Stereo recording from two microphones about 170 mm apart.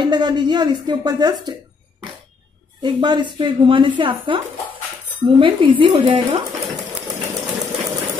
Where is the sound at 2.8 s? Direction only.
25° right (ahead or behind).